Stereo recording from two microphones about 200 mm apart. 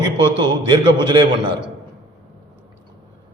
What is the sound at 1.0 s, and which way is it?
Speech, 20° right (ahead or behind).